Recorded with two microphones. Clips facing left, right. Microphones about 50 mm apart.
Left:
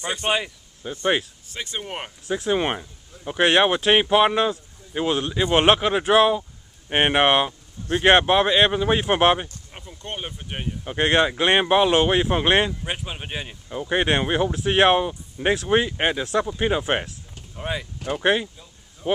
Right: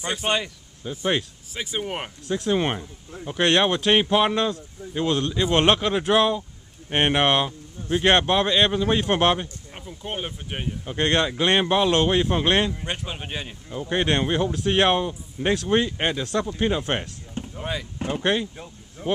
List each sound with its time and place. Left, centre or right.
0.0 s speech: centre
1.5 s speech: centre
2.2 s speech: centre
9.8 s speech: centre
10.8 s speech: centre
12.8 s speech: centre